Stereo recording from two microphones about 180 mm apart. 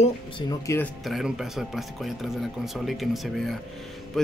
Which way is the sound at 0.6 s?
15° left (ahead or behind).